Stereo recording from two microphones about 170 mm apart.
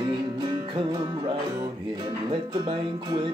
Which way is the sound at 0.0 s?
25° right (ahead or behind).